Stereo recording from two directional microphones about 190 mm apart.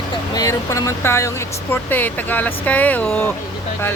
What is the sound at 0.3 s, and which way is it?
Speech, 20° left (ahead or behind).